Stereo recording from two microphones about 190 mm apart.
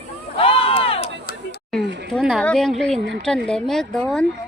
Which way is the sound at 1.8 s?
65° right (ahead or behind).